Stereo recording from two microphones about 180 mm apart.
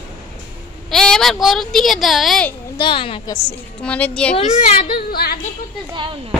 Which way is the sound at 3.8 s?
5° left (ahead or behind).